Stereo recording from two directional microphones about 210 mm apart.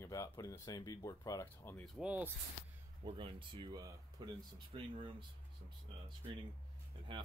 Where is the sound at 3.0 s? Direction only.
25° right (ahead or behind).